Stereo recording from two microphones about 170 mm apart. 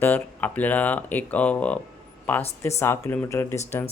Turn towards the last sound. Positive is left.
turn(degrees=15)  # may be behind; listen again after turning